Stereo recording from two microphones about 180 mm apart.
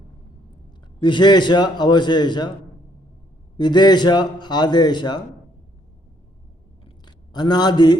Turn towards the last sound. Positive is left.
turn(degrees=25)  # may be behind; listen again after turning